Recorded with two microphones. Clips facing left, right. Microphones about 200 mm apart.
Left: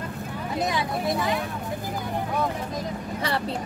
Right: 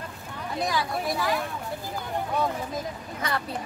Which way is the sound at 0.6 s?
20° left (ahead or behind).